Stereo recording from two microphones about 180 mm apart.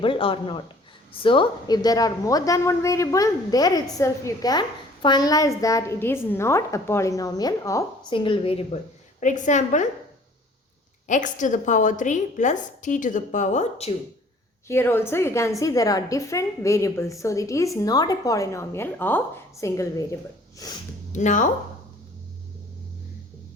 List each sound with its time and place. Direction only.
0.0 s a woman's voice: 30° left (ahead or behind)
8.1 s a woman's voice: 30° left (ahead or behind)
11.1 s a woman's voice: 45° left (ahead or behind)
14.7 s a woman's voice: 15° left (ahead or behind)
21.1 s speech: 40° left (ahead or behind)